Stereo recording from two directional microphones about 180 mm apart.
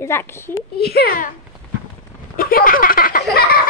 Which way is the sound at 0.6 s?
60° left (ahead or behind).